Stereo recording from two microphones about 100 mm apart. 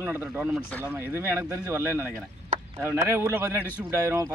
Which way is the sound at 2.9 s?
25° right (ahead or behind).